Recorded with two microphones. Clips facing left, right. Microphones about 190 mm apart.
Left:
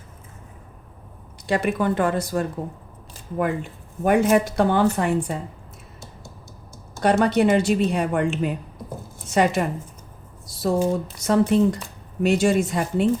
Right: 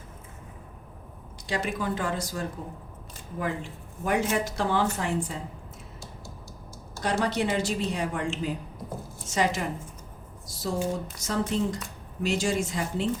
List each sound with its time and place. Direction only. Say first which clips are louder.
1.5 s speech: left 8 dB; 60° left (ahead or behind)
7.0 s speech: left 9 dB; 60° left (ahead or behind)